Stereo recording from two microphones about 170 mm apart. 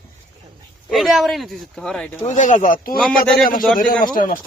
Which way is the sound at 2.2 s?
45° left (ahead or behind).